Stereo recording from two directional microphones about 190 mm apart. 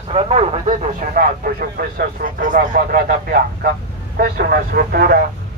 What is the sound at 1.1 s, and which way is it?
Speech, 50° right (ahead or behind).